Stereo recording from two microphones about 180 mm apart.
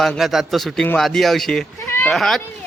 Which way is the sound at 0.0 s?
Centre (ahead or behind).